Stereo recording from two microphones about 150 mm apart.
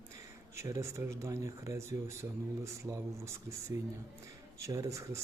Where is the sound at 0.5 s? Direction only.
20° right (ahead or behind).